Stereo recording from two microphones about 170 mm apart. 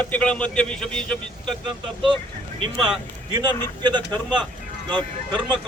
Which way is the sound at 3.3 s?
25° right (ahead or behind).